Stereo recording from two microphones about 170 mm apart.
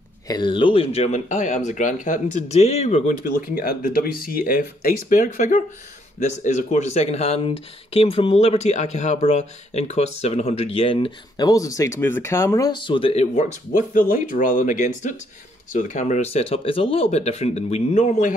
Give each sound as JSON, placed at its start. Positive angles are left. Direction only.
{"t": 0.3, "sound": "speech", "side_deg": 30}